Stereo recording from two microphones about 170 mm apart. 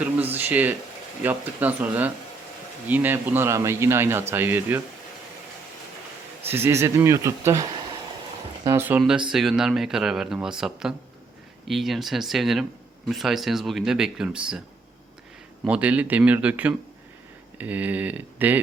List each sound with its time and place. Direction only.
0.3 s a man's voice: 10° right (ahead or behind)
6.5 s a man's voice: 15° right (ahead or behind)
15.6 s a man's voice: 5° right (ahead or behind)